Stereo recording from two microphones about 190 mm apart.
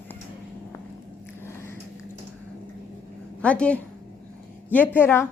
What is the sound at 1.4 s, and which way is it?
Biting, 15° left (ahead or behind).